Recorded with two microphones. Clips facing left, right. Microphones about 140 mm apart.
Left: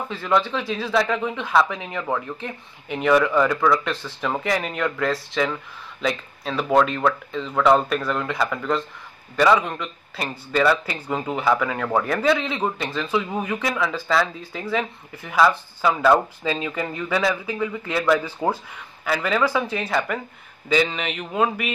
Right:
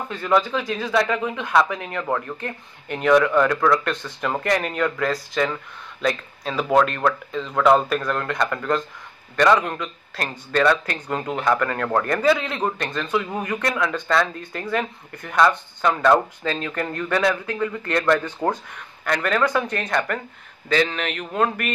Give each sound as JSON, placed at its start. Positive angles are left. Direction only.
{"t": 0.1, "sound": "speech", "side_deg": 0}